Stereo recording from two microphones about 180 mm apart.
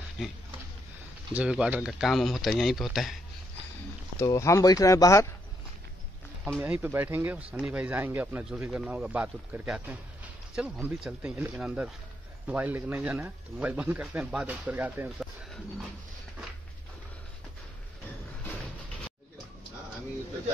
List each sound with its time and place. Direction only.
0.2 s speech: 5° right (ahead or behind)
4.2 s speech: 15° left (ahead or behind)
6.6 s speech: 10° right (ahead or behind)